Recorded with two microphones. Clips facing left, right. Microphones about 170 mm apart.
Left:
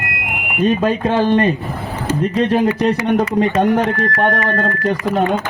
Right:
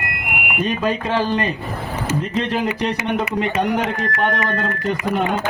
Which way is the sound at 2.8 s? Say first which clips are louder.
Left 6 dB; 40° left (ahead or behind).